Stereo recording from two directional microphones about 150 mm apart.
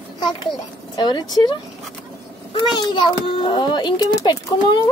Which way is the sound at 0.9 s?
30° left (ahead or behind).